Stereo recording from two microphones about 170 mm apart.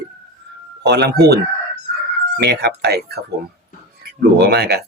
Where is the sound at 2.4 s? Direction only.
75° right (ahead or behind).